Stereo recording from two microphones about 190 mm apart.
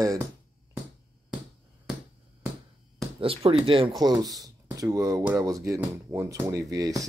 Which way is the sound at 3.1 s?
30° right (ahead or behind).